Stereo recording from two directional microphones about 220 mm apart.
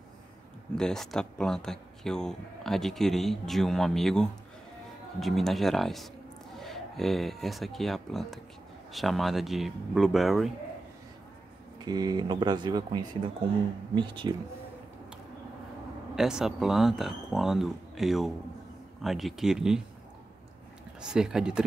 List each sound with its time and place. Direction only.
0.7 s speech: 5° left (ahead or behind)
11.8 s speech: 20° right (ahead or behind)
16.2 s speech: centre (ahead or behind)
21.0 s speech: 5° right (ahead or behind)